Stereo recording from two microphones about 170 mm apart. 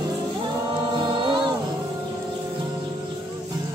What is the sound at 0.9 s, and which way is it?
A capella, 25° right (ahead or behind).